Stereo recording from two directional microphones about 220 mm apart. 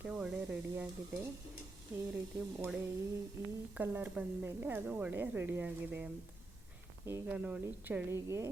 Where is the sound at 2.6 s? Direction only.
5° right (ahead or behind).